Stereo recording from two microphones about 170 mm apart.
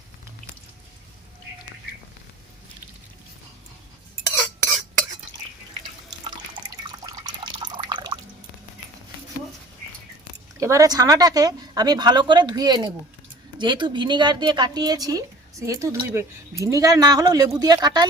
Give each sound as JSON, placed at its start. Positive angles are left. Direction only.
{"t": 4.6, "sound": "cutlery", "side_deg": 5}
{"t": 7.0, "sound": "drip", "side_deg": -25}
{"t": 10.6, "sound": "speech", "side_deg": -20}